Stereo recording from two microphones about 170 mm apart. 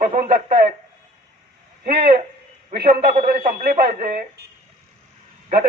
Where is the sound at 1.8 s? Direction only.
65° right (ahead or behind).